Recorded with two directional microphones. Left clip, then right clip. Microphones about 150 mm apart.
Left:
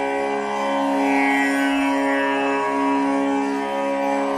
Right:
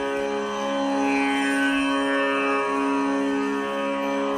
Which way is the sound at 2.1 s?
45° left (ahead or behind).